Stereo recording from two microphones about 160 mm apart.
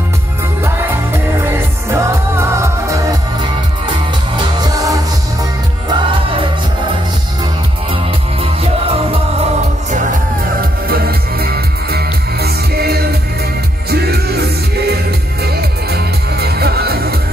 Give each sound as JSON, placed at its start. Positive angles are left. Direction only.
{"t": 1.4, "sound": "music", "side_deg": -20}
{"t": 4.4, "sound": "music", "side_deg": -25}
{"t": 7.9, "sound": "music", "side_deg": -35}
{"t": 10.6, "sound": "music", "side_deg": -70}